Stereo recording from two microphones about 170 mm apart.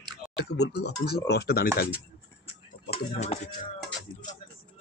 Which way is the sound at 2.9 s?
40° left (ahead or behind).